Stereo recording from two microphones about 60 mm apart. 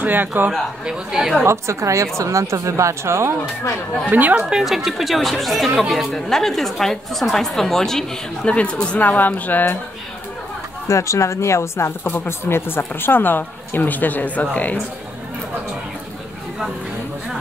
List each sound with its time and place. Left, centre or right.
0.0 s a man's voice: right
0.5 s speech: centre
1.4 s a woman's voice: right
4.1 s speech: right
4.4 s a woman's voice: centre
8.5 s speech: centre
10.9 s speech: left